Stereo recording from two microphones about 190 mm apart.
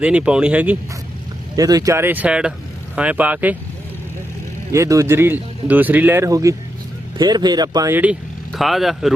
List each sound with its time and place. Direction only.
0.0 s speech: 5° right (ahead or behind)
1.5 s speech: 20° right (ahead or behind)
4.7 s speech: 15° right (ahead or behind)
8.5 s speech: centre (ahead or behind)